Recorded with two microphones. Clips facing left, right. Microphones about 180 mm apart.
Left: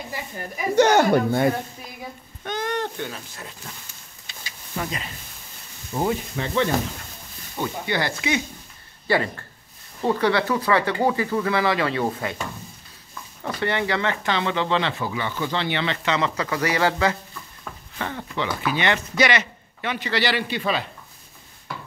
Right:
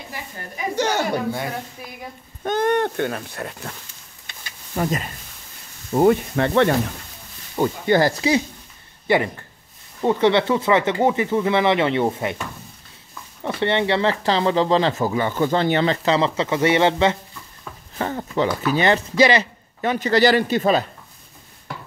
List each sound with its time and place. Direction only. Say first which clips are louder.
0.7 s speech: left 6 dB; 60° left (ahead or behind)
2.4 s speech: right 7 dB; 55° right (ahead or behind)
4.3 s a sound: right 1 dB; 50° right (ahead or behind)
5.9 s speech: right 8 dB; 60° right (ahead or behind)
7.5 s speech: right 8 dB; 45° right (ahead or behind)
9.0 s speech: right 3 dB; 20° right (ahead or behind)
13.4 s speech: right 4 dB; 25° right (ahead or behind)
17.9 s speech: right 6 dB; 40° right (ahead or behind)